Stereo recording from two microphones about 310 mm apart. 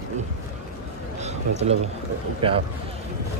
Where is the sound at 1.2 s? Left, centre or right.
Right.